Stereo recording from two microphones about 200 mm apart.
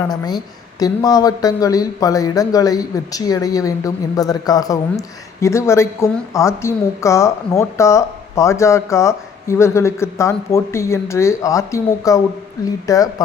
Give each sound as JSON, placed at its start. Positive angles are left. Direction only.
{"t": 0.1, "sound": "speech", "side_deg": 20}